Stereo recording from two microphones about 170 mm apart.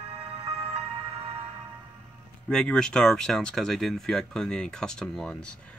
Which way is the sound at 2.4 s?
5° left (ahead or behind).